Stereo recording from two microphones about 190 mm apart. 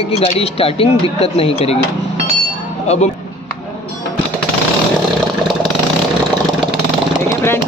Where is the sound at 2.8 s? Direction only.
35° left (ahead or behind).